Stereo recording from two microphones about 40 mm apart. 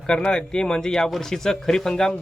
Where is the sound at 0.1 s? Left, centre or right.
Left.